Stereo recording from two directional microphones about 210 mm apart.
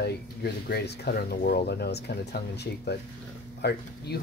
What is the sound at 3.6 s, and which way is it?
Speech, 50° left (ahead or behind).